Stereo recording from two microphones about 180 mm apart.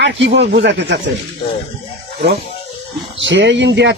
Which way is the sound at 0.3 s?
70° right (ahead or behind).